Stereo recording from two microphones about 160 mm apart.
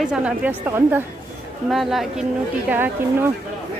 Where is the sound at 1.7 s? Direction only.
Centre (ahead or behind).